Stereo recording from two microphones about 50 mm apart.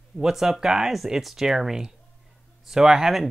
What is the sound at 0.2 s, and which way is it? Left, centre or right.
Speech, centre.